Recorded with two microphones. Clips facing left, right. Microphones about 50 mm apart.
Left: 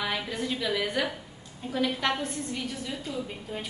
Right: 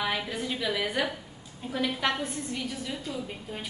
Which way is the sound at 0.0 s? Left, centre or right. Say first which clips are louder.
Even; centre.